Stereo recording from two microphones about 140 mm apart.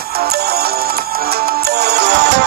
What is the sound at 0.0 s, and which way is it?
Music, 90° right.